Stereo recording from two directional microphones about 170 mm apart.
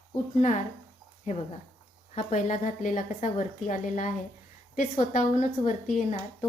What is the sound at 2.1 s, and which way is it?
A woman's voice, 45° left (ahead or behind).